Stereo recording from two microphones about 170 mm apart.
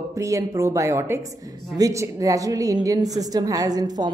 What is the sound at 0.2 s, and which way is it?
A woman's voice, 20° right (ahead or behind).